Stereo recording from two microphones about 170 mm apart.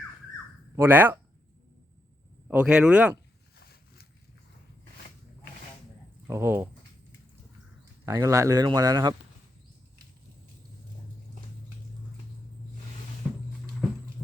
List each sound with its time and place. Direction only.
0.8 s speech: 10° right (ahead or behind)
2.5 s speech: 5° right (ahead or behind)
3.6 s a sound: 65° left (ahead or behind)
6.2 s speech: 15° right (ahead or behind)
8.0 s a man's voice: 20° right (ahead or behind)
13.2 s a sound: centre (ahead or behind)